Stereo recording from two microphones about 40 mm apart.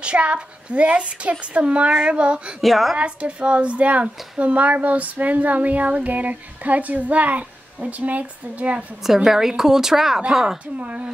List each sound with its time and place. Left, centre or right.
0.0 s a woman's voice: right
2.6 s a woman's voice: centre
3.0 s a woman's voice: right
9.0 s a woman's voice: centre
10.8 s a woman's voice: right